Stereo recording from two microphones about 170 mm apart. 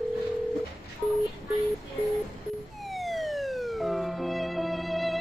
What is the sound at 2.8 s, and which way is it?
Music, centre (ahead or behind).